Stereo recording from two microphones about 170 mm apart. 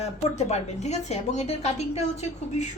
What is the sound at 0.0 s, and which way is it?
Speech, 40° left (ahead or behind).